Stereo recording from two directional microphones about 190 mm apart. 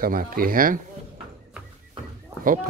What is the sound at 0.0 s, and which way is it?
Speech, 50° right (ahead or behind).